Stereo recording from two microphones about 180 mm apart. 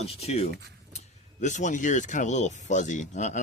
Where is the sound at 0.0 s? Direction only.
35° left (ahead or behind).